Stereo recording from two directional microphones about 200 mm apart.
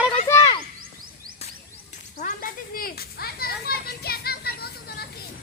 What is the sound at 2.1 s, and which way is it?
Children playing, 40° left (ahead or behind).